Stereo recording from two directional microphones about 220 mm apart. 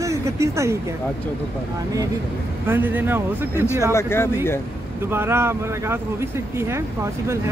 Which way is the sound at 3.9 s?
10° left (ahead or behind).